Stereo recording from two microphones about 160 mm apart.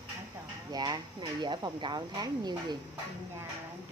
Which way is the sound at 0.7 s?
25° right (ahead or behind).